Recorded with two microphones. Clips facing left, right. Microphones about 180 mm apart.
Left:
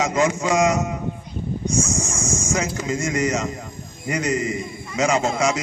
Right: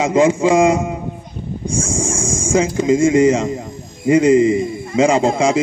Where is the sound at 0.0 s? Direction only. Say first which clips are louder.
Right 7 dB; 30° right (ahead or behind).